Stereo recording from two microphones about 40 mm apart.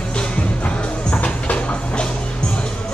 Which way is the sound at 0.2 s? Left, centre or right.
Left.